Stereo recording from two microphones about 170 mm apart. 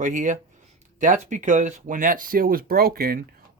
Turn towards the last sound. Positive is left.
turn(degrees=-60)  # may be behind; listen again after turning